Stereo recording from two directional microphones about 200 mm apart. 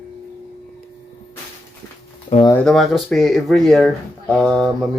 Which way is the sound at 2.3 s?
25° left (ahead or behind).